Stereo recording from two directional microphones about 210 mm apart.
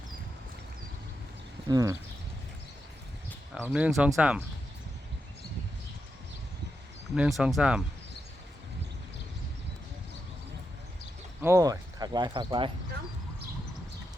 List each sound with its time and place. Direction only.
1.6 s speech: 15° right (ahead or behind)
3.5 s speech: 5° right (ahead or behind)
7.2 s speech: centre (ahead or behind)
11.4 s speech: 15° right (ahead or behind)